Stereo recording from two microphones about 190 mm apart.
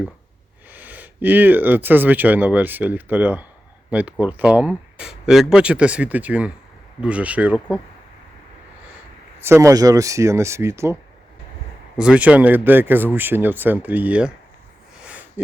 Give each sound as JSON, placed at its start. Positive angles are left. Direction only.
{"t": 0.7, "sound": "speech", "side_deg": -10}
{"t": 9.4, "sound": "speech", "side_deg": -15}
{"t": 11.9, "sound": "speech", "side_deg": -5}